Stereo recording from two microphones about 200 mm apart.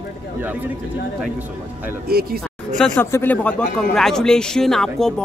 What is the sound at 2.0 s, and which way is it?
Speech, 50° right (ahead or behind).